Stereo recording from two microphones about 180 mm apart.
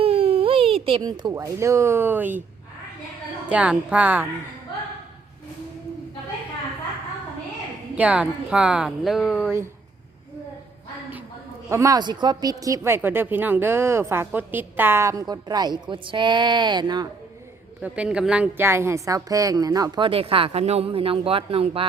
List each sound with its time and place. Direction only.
0.0 s speech: 30° right (ahead or behind); by 2.4 s 10° right (ahead or behind)
3.5 s speech: 5° right (ahead or behind)
7.9 s speech: 5° right (ahead or behind)
11.7 s speech: 20° right (ahead or behind)
17.7 s speech: 5° right (ahead or behind); by 21.8 s 30° right (ahead or behind)